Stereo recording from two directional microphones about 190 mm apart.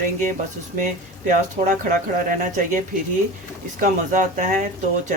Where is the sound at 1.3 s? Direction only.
45° right (ahead or behind).